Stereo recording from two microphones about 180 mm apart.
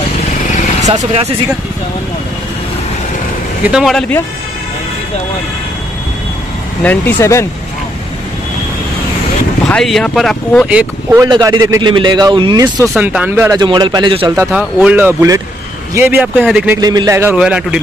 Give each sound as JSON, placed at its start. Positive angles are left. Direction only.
{"t": 3.6, "sound": "speech", "side_deg": 0}
{"t": 6.8, "sound": "speech", "side_deg": 10}
{"t": 9.7, "sound": "speech", "side_deg": 5}
{"t": 10.7, "sound": "a man's voice", "side_deg": -10}
{"t": 11.2, "sound": "a man's voice", "side_deg": -25}
{"t": 12.8, "sound": "a man's voice", "side_deg": -5}
{"t": 13.7, "sound": "a man's voice", "side_deg": -25}
{"t": 16.8, "sound": "a man's voice", "side_deg": -20}